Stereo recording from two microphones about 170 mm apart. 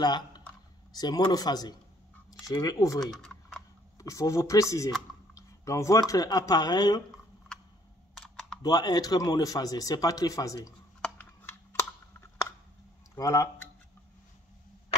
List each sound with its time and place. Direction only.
0.0 s speech: 25° left (ahead or behind)
3.0 s typing: 5° left (ahead or behind)
4.0 s speech: 20° left (ahead or behind)
8.1 s typing: centre (ahead or behind)
8.6 s speech: 25° left (ahead or behind)
11.0 s a sound: 10° left (ahead or behind)
13.1 s speech: 15° left (ahead or behind)